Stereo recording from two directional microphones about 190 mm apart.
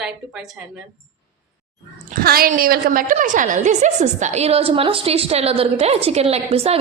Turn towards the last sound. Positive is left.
turn(degrees=-30)  # may be behind; listen again after turning